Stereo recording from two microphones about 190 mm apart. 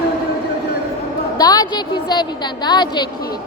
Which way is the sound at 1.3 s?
20° left (ahead or behind).